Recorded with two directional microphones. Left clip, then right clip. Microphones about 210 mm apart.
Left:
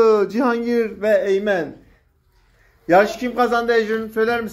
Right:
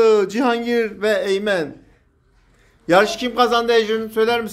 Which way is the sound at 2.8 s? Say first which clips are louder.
Even; 10° right (ahead or behind).